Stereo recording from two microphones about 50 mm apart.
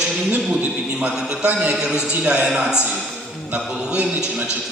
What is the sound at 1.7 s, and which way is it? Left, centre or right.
A man's voice, centre.